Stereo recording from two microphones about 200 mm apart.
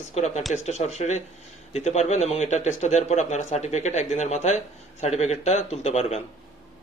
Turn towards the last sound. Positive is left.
turn(degrees=30)  # may be behind; listen again after turning